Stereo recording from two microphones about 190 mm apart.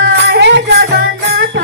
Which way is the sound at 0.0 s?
65° right (ahead or behind).